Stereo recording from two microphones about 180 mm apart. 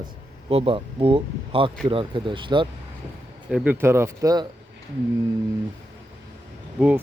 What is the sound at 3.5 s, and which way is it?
Speech, 10° right (ahead or behind).